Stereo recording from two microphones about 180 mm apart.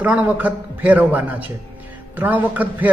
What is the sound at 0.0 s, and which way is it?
A man's voice, 10° right (ahead or behind).